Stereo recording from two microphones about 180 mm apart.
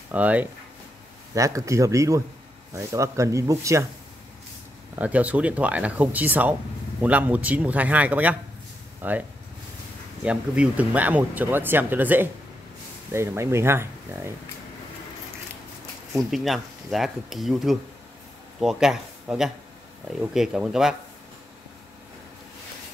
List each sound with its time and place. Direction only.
0.1 s speech: 10° right (ahead or behind)
4.9 s speech: 10° right (ahead or behind)
10.2 s speech: 5° right (ahead or behind)
16.2 s speech: centre (ahead or behind)